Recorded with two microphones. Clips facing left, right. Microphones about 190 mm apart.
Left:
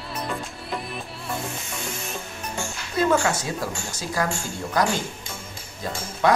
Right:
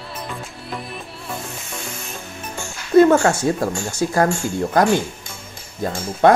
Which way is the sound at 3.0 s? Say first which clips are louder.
Right 9 dB; 50° right (ahead or behind).